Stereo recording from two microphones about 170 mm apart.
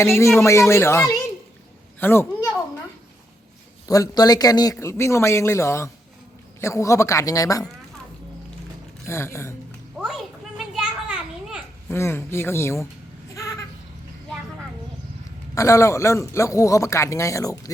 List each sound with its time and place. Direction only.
0.2 s a man's voice: 15° left (ahead or behind)
3.8 s a man's voice: 20° left (ahead or behind)
9.0 s a man's voice: 15° left (ahead or behind)
10.0 s a sound: centre (ahead or behind)
10.8 s children playing: 5° right (ahead or behind)
11.9 s a man's voice: 15° left (ahead or behind)
13.3 s goat: 20° left (ahead or behind)
15.5 s a man's voice: 20° left (ahead or behind)